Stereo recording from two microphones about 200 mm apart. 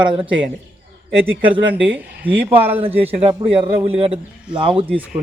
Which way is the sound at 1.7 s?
10° right (ahead or behind).